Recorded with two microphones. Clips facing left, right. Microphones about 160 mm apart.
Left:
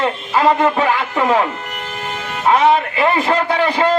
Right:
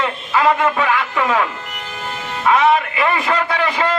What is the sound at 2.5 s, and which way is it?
A man's voice, 35° left (ahead or behind).